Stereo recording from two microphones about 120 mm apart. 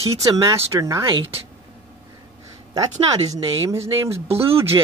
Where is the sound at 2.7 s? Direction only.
30° right (ahead or behind).